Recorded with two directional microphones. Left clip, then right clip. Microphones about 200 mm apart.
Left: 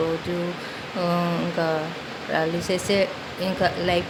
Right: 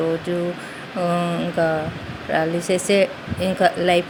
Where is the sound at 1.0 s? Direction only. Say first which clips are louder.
Right 3 dB; 10° right (ahead or behind).